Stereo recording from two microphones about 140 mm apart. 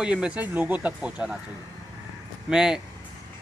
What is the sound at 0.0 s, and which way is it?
Speech, 10° right (ahead or behind).